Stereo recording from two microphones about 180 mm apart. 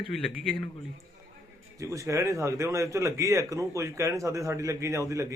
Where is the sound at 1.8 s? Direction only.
15° right (ahead or behind).